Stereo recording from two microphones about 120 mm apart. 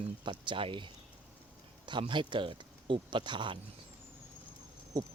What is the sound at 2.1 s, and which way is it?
Speech, 40° right (ahead or behind).